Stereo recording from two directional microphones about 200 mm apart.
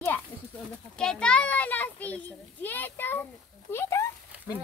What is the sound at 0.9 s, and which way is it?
Children playing, 5° left (ahead or behind).